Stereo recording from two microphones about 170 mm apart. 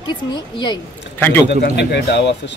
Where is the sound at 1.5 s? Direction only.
85° left.